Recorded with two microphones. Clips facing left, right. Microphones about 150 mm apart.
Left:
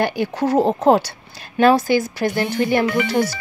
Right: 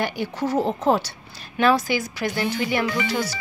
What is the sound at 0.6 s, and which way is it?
Speech, 35° left (ahead or behind).